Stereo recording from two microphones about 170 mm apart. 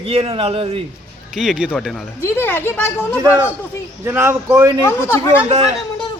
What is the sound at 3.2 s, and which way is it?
Speech, 10° right (ahead or behind).